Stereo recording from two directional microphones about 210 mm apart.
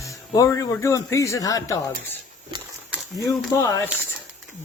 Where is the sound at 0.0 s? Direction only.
15° left (ahead or behind).